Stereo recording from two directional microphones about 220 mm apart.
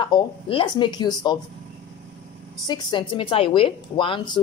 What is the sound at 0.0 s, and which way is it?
A woman's voice, 25° left (ahead or behind).